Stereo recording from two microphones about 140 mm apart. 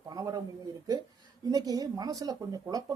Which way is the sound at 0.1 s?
25° right (ahead or behind).